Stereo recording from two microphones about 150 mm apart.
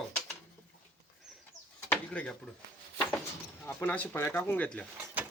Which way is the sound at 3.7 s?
10° left (ahead or behind).